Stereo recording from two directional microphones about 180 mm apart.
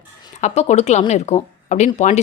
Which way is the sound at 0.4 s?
40° left (ahead or behind).